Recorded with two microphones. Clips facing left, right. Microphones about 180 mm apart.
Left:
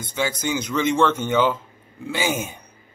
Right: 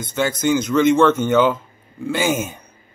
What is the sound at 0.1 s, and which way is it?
Speech, 10° left (ahead or behind).